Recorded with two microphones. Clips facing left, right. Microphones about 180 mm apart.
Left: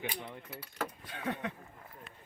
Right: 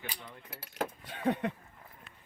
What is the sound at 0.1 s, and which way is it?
Speech, 60° left (ahead or behind).